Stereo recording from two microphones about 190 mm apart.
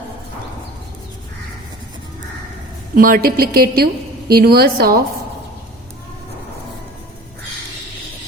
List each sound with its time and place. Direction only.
2.9 s a woman's voice: 50° right (ahead or behind)